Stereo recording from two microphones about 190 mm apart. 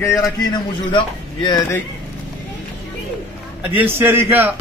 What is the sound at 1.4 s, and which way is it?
Speech, 15° left (ahead or behind).